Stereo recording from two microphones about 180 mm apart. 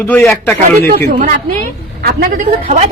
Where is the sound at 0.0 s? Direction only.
15° left (ahead or behind).